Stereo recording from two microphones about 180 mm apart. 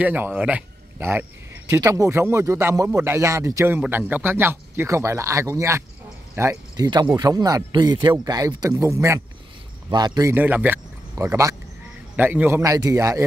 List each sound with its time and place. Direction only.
0.0 s speech: 10° right (ahead or behind)
10.3 s speech: 10° right (ahead or behind)